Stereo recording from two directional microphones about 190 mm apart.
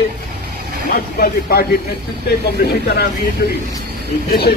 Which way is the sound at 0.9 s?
55° left (ahead or behind).